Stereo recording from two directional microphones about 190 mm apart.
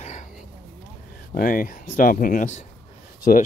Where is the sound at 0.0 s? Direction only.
35° left (ahead or behind).